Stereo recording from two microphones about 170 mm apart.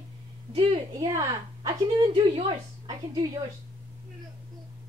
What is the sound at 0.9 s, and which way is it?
A woman's voice, 20° right (ahead or behind).